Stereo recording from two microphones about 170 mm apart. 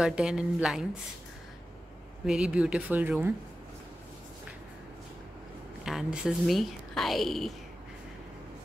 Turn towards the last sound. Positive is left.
turn(degrees=0)  # may be behind; listen again after turning